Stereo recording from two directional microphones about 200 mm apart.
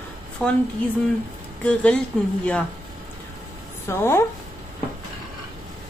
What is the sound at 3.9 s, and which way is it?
Speech, 15° left (ahead or behind).